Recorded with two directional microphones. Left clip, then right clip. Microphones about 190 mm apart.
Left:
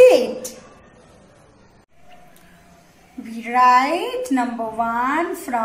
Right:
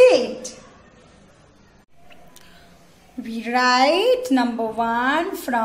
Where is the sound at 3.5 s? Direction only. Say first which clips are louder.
Left 3 dB; 60° right (ahead or behind).